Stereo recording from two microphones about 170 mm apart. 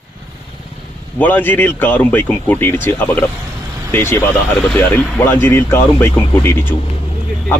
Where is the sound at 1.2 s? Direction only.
10° left (ahead or behind).